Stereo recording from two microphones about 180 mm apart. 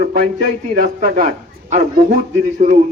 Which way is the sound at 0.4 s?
45° right (ahead or behind).